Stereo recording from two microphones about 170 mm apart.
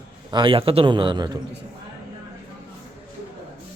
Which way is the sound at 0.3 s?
30° right (ahead or behind).